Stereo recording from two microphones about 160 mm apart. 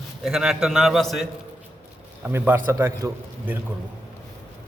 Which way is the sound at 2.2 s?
10° right (ahead or behind).